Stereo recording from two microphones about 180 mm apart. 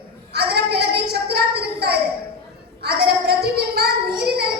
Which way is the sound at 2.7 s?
60° right (ahead or behind).